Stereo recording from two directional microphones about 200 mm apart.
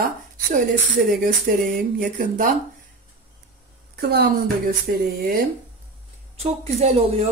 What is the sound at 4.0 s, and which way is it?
A woman's voice, 50° right (ahead or behind).